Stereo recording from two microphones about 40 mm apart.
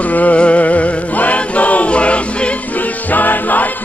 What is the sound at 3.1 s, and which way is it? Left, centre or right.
Music, left.